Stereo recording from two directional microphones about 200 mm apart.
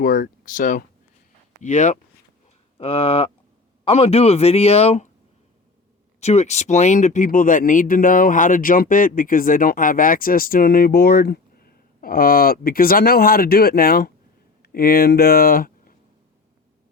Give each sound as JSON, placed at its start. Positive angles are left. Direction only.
{"t": 0.0, "sound": "speech", "side_deg": 45}
{"t": 6.1, "sound": "speech", "side_deg": 35}